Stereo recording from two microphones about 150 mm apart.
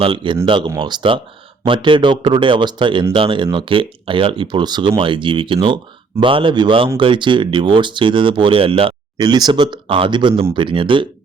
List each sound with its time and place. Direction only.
0.0 s speech: 35° right (ahead or behind)